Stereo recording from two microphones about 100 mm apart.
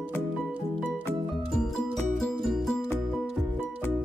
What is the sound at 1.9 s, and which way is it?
Music, 5° left (ahead or behind).